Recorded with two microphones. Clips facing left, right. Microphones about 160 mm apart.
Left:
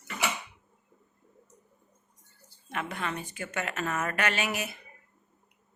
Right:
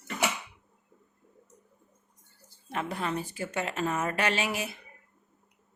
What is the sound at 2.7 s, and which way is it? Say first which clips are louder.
A woman's voice: right 2 dB; 35° right (ahead or behind).